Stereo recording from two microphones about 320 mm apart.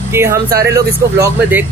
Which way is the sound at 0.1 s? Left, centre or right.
Centre.